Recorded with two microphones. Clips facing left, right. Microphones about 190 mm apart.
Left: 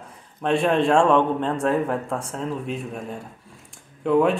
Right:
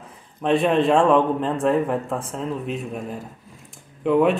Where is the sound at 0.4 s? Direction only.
Centre (ahead or behind).